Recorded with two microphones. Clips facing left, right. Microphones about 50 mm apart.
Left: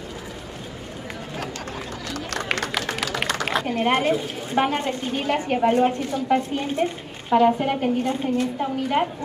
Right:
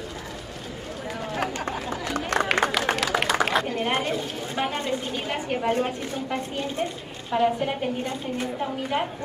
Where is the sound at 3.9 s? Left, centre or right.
Centre.